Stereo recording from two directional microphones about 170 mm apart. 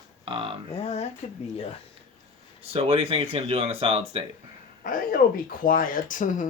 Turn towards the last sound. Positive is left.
turn(degrees=50)  # may be behind; listen again after turning